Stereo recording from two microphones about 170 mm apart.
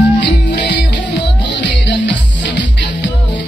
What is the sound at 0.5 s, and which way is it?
Music, 90° left.